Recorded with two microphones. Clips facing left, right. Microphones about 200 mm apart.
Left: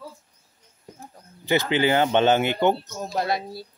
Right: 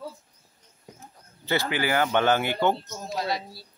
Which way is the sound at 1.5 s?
20° left (ahead or behind).